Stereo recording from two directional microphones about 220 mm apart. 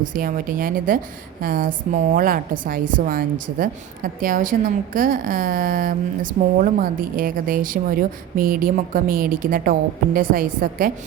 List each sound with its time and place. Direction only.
0.0 s a woman's voice: 40° right (ahead or behind)